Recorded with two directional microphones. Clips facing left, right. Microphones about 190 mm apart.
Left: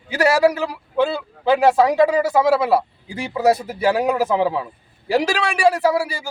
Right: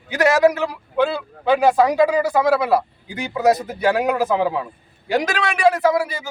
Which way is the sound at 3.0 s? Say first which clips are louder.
Even; 30° left (ahead or behind).